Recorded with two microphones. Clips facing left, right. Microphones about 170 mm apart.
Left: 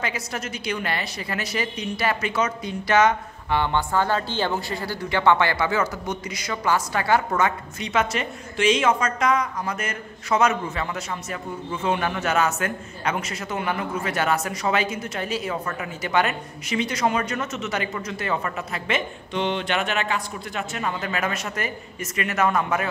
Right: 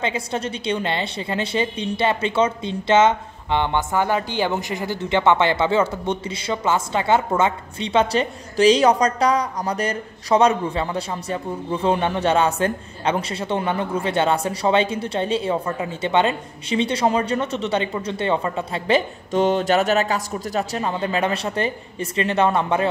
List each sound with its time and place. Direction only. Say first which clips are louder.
0.0 s a woman's voice: right 5 dB; 25° right (ahead or behind)